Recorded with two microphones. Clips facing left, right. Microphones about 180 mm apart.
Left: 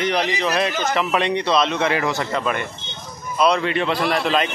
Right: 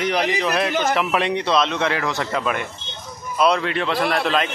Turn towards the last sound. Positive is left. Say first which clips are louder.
# even
turn(degrees=0)  # may be behind; listen again after turning